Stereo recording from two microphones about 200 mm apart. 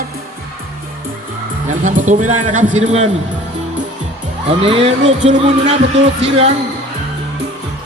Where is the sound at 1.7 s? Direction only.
40° right (ahead or behind).